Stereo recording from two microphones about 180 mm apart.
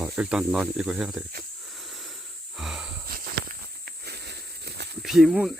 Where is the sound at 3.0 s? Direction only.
60° right (ahead or behind).